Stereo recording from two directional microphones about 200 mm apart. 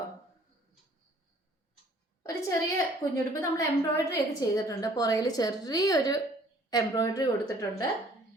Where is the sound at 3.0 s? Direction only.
20° left (ahead or behind).